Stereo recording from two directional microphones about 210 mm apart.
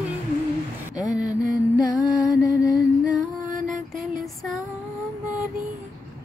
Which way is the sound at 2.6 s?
15° left (ahead or behind).